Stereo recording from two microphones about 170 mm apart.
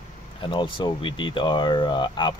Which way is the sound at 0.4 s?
30° left (ahead or behind).